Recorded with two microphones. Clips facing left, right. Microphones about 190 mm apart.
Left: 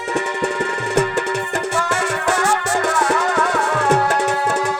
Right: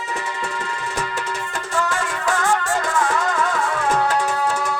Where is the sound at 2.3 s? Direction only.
75° left (ahead or behind).